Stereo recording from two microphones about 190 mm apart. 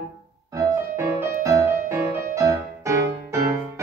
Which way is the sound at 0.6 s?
15° right (ahead or behind).